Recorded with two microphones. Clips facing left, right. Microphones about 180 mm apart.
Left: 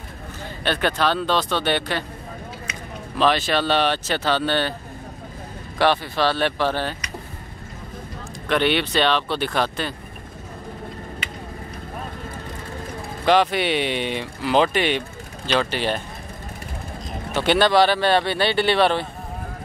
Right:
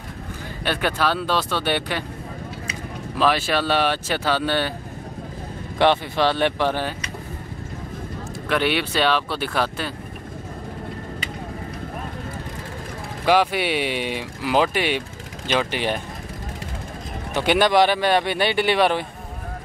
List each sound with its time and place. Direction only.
0.7 s speech: 10° right (ahead or behind)
3.2 s speech: 5° right (ahead or behind)
5.8 s speech: 20° right (ahead or behind)
8.5 s speech: 5° right (ahead or behind)
13.2 s speech: 10° right (ahead or behind)
17.3 s speech: 15° right (ahead or behind)